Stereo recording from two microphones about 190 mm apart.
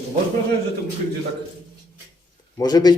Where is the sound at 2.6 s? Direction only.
20° left (ahead or behind).